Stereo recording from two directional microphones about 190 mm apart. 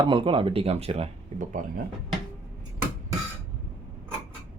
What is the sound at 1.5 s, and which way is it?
Speech, 45° right (ahead or behind).